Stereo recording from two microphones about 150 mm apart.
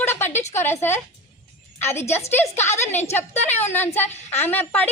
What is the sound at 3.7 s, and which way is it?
A woman's voice, 15° left (ahead or behind).